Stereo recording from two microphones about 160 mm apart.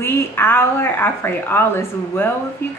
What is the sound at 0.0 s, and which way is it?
A woman's voice, 15° left (ahead or behind).